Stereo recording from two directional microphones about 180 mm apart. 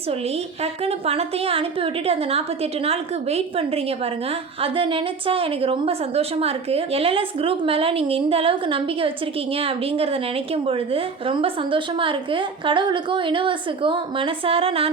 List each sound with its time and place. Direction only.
0.6 s a woman's voice: 35° right (ahead or behind)